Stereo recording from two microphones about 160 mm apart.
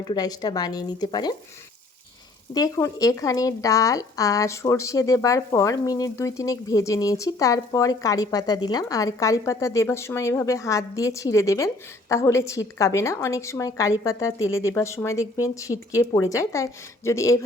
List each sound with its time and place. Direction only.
0.0 s speech: 25° left (ahead or behind)
2.5 s speech: 20° left (ahead or behind)